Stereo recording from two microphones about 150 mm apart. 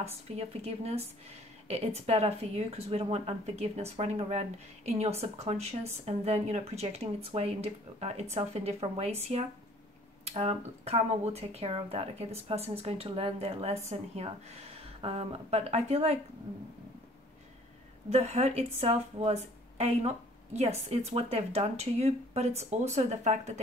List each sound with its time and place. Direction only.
0.0 s speech: 45° right (ahead or behind)
18.1 s speech: 45° right (ahead or behind)